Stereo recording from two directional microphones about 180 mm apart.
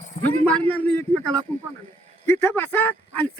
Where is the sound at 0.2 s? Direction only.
5° left (ahead or behind).